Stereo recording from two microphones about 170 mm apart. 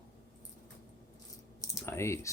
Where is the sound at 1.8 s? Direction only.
15° left (ahead or behind).